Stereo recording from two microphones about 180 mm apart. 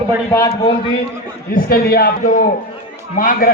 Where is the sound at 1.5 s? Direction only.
55° left (ahead or behind).